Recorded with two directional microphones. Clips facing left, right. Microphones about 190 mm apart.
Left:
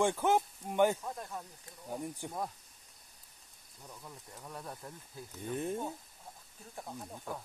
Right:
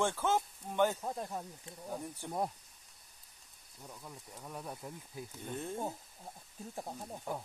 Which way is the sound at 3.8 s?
5° right (ahead or behind).